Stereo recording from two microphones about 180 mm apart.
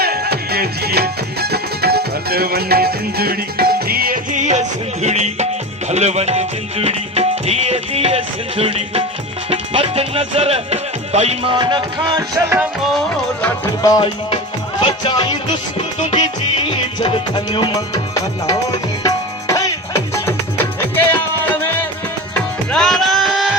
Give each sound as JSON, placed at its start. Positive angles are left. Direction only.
{"t": 0.0, "sound": "music", "side_deg": -60}
{"t": 13.8, "sound": "music", "side_deg": 25}
{"t": 17.0, "sound": "music", "side_deg": 25}